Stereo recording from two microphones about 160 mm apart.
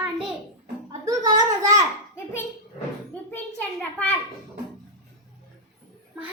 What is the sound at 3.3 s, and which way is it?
Speech, 10° left (ahead or behind).